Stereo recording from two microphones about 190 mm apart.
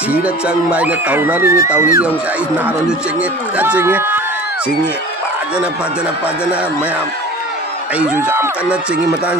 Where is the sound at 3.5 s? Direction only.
10° right (ahead or behind).